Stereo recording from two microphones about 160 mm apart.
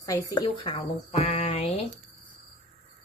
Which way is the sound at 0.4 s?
35° left (ahead or behind).